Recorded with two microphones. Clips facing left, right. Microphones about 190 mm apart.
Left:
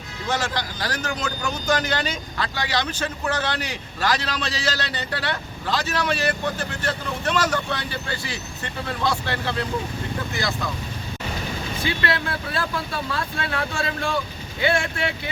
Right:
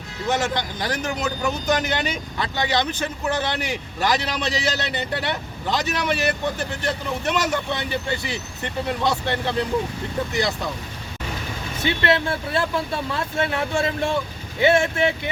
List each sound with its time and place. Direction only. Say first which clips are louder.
0.3 s speech: right 3 dB; 20° right (ahead or behind)
11.8 s speech: right 5 dB; 25° right (ahead or behind)